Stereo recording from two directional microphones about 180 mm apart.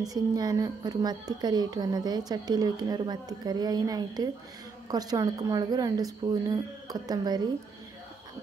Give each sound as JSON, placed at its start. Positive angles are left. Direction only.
{"t": 0.0, "sound": "a woman's voice", "side_deg": -20}